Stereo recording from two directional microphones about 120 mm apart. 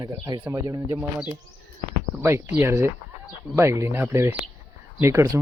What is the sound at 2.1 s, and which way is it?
Speech, 15° right (ahead or behind).